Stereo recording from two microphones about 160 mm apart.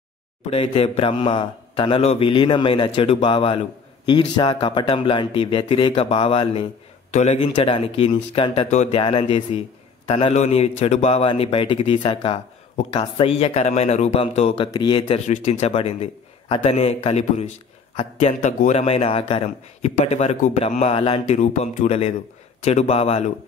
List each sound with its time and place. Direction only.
0.5 s a man's voice: 35° left (ahead or behind)
7.1 s a man's voice: 50° left (ahead or behind)
7.3 s a man's voice: 35° left (ahead or behind)
14.7 s a man's voice: 30° left (ahead or behind)